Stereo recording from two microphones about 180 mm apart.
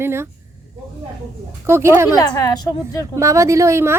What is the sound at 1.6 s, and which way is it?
Speech, 15° right (ahead or behind).